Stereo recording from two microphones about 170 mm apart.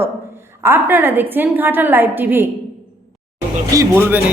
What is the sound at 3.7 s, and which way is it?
Speech, 20° right (ahead or behind).